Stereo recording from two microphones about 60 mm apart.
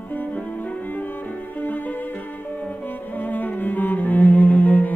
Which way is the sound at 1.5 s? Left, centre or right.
Left.